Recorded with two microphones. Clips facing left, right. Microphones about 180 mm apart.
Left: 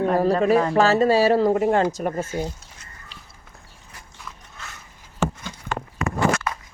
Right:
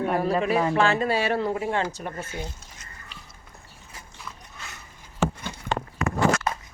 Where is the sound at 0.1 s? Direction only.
40° left (ahead or behind).